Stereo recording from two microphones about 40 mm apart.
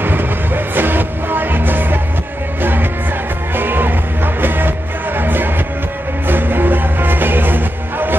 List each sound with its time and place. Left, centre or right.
0.0 s music: right